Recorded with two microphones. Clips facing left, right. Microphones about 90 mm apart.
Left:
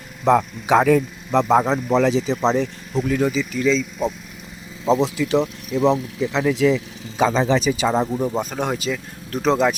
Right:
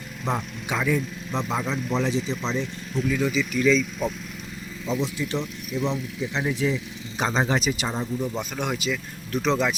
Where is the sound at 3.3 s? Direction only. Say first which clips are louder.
Left 1 dB; 35° left (ahead or behind).